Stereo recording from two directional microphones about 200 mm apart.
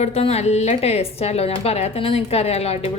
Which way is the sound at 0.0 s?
30° left (ahead or behind).